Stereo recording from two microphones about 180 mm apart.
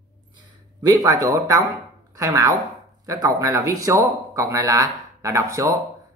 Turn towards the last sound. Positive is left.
turn(degrees=-20)  # may be behind; listen again after turning